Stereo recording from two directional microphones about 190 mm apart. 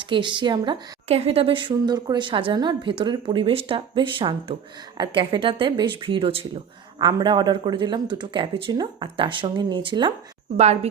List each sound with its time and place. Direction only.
0.0 s a woman's voice: 25° right (ahead or behind)